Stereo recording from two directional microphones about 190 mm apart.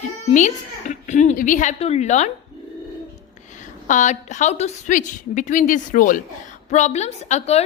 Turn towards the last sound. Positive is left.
turn(degrees=35)  # may be behind; listen again after turning